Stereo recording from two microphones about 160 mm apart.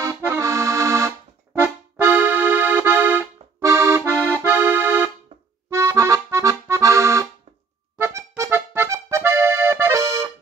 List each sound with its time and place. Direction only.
0.3 s music: 20° right (ahead or behind)
5.7 s accordion: 20° right (ahead or behind)